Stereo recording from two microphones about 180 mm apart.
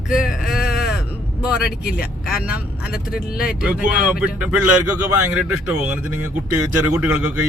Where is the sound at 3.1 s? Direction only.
55° left (ahead or behind).